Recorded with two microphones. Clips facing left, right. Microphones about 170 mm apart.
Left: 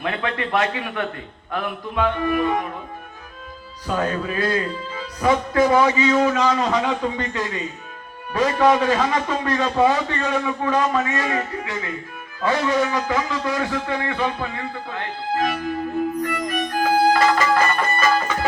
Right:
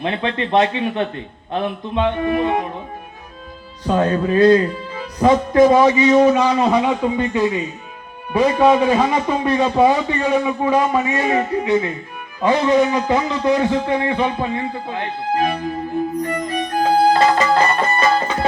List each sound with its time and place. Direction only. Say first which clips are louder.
0.0 s speech: right 3 dB; 25° right (ahead or behind)
3.8 s a man's voice: right 6 dB; 30° right (ahead or behind)
15.5 s music: right 2 dB; 30° right (ahead or behind)